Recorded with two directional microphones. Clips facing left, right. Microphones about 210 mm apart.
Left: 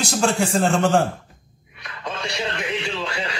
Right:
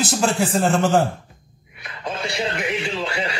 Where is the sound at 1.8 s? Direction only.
25° right (ahead or behind).